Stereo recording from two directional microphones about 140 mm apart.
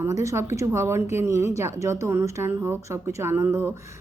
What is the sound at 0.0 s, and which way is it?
A woman's voice, 20° right (ahead or behind).